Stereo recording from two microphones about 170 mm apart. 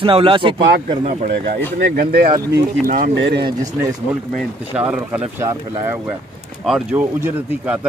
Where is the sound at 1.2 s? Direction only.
65° right (ahead or behind); by 3.4 s 85° right.